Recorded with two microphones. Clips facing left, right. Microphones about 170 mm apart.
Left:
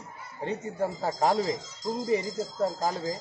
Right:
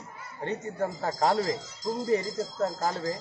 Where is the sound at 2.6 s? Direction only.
10° left (ahead or behind).